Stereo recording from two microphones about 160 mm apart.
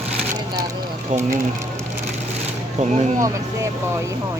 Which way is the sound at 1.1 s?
50° right (ahead or behind).